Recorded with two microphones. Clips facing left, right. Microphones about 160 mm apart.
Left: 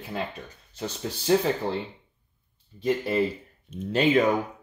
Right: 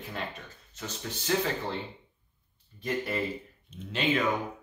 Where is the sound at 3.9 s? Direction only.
40° left (ahead or behind).